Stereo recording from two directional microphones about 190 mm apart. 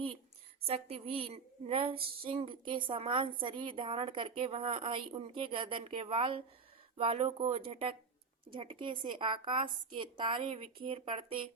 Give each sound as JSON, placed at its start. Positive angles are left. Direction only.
{"t": 0.6, "sound": "a woman's voice", "side_deg": -30}